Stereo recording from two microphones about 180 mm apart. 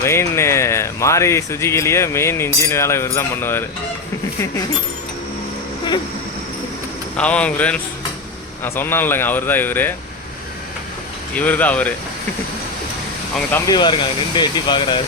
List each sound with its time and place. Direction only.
0.0 s speech: 15° left (ahead or behind)
7.2 s speech: 5° left (ahead or behind)
11.3 s speech: 10° left (ahead or behind)
13.7 s speech: 25° left (ahead or behind)